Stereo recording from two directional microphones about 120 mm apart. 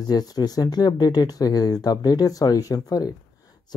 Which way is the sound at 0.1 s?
35° left (ahead or behind).